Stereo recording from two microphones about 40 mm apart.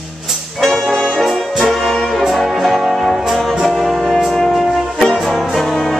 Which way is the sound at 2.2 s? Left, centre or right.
Centre.